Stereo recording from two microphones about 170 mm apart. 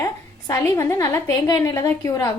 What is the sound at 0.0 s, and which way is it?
A woman's voice, 20° left (ahead or behind).